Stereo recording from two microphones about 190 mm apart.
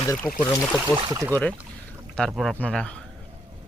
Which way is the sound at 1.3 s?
5° left (ahead or behind).